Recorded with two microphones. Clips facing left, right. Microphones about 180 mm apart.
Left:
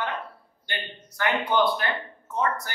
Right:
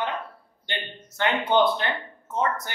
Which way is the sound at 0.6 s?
25° right (ahead or behind).